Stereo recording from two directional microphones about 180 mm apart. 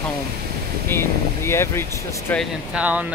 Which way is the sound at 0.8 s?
15° left (ahead or behind).